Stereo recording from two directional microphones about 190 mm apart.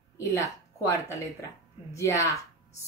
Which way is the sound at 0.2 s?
15° left (ahead or behind).